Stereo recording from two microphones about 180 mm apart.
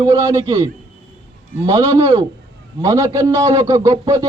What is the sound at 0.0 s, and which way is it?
Speech, 20° right (ahead or behind).